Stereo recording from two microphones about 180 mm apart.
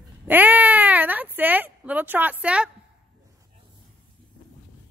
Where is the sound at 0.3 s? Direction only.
10° right (ahead or behind).